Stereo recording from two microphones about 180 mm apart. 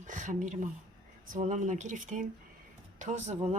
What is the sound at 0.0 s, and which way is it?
Speech, 45° right (ahead or behind).